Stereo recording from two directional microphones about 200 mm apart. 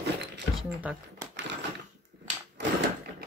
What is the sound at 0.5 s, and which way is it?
Speech, 5° right (ahead or behind).